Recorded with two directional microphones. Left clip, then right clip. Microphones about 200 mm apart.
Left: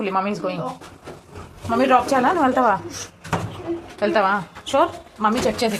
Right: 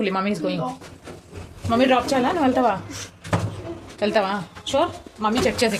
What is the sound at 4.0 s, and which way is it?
Speech, 10° right (ahead or behind).